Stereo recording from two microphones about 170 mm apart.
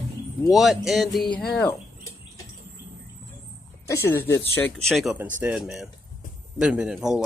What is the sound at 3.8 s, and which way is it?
Speech, 15° left (ahead or behind).